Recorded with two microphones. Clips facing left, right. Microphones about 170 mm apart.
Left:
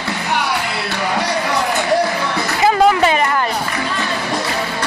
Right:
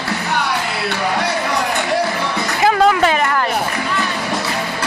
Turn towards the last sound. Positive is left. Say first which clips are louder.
# left 1 dB
turn(degrees=5)  # may be behind; listen again after turning